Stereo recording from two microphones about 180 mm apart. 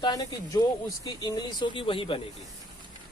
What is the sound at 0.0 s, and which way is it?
Speech, 20° left (ahead or behind).